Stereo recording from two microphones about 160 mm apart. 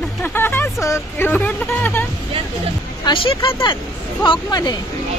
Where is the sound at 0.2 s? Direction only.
15° left (ahead or behind).